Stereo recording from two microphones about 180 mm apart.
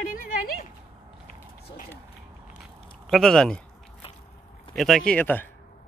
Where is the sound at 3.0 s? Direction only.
Centre (ahead or behind).